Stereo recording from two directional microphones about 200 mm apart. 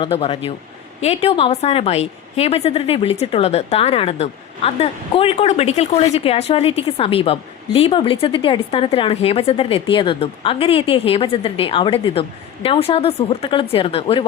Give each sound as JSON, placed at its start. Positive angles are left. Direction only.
{"t": 0.0, "sound": "a woman's voice", "side_deg": 30}